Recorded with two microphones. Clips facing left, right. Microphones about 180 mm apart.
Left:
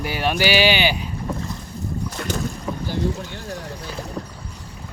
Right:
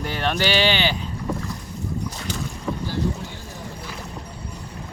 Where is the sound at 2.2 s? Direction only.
45° left (ahead or behind).